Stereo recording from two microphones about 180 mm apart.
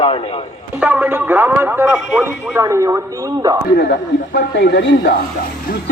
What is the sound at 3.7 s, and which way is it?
Speech, 65° left (ahead or behind).